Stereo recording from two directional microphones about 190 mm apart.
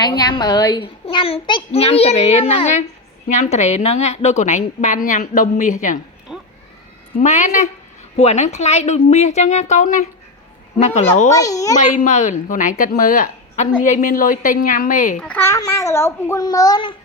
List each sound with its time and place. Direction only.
0.2 s a child's voice: 20° left (ahead or behind); by 5.7 s 45° left (ahead or behind)
6.3 s a sound: centre (ahead or behind)
7.2 s a child's voice: 40° left (ahead or behind)
11.3 s a child's voice: 20° left (ahead or behind)
11.8 s a woman's voice: 40° left (ahead or behind)
15.2 s a child's voice: 10° left (ahead or behind)